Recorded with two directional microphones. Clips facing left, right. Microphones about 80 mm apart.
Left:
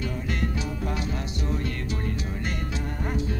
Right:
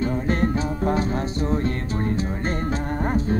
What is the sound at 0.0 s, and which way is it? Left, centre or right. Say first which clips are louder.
Music: right 8 dB; right.